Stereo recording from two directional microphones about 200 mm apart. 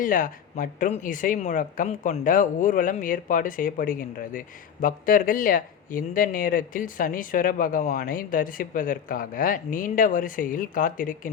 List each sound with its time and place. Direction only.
0.0 s speech: 45° left (ahead or behind)